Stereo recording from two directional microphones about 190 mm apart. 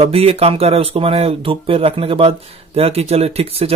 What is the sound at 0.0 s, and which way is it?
Speech, 30° right (ahead or behind).